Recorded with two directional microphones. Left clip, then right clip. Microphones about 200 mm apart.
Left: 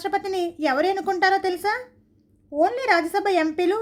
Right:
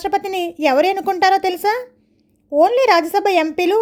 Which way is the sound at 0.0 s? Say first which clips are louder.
Right 5 dB; 30° right (ahead or behind).